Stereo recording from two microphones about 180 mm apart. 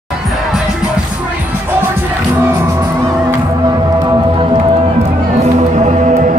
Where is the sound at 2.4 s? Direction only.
15° right (ahead or behind).